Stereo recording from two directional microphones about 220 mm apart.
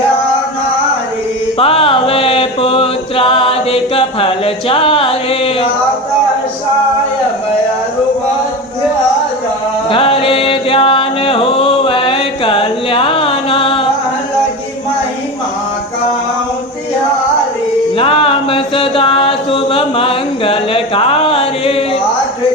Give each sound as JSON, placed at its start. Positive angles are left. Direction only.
{"t": 1.5, "sound": "chant", "side_deg": 25}
{"t": 9.9, "sound": "chant", "side_deg": 25}
{"t": 17.9, "sound": "chant", "side_deg": 25}